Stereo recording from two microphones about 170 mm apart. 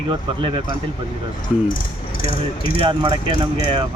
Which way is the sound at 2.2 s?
30° left (ahead or behind).